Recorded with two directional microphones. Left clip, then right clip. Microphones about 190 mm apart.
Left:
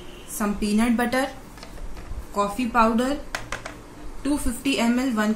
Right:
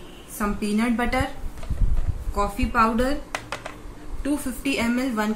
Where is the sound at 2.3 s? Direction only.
25° left (ahead or behind).